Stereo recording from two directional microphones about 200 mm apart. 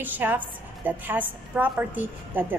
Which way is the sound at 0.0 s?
10° right (ahead or behind).